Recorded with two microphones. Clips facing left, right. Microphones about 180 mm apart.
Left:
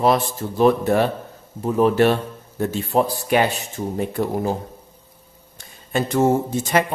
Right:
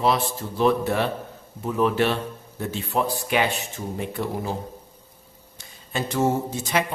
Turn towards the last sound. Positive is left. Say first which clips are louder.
# left 5 dB
turn(degrees=50)  # may be behind; listen again after turning